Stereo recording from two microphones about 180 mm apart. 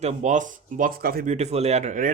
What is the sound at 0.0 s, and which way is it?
Speech, 45° right (ahead or behind).